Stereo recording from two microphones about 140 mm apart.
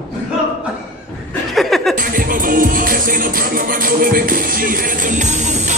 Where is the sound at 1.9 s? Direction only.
90° right.